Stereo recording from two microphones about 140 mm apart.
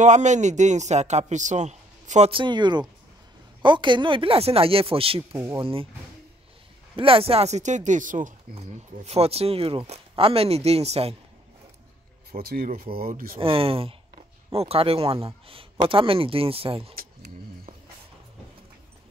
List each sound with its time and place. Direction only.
0.0 s speech: 60° right (ahead or behind)
2.3 s speech: 35° right (ahead or behind)
5.3 s speech: 15° right (ahead or behind)
5.6 s speech: 40° right (ahead or behind)
7.0 s speech: 40° right (ahead or behind); by 8.3 s 65° right (ahead or behind)
8.5 s speech: 50° right (ahead or behind)
12.3 s speech: 90° right
13.4 s speech: 40° right (ahead or behind)